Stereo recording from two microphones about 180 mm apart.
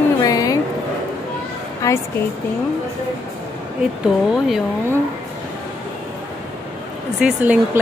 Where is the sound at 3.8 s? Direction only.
Centre (ahead or behind).